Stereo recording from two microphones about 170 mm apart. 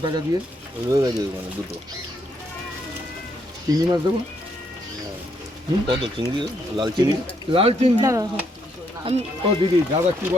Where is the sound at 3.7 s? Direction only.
20° right (ahead or behind).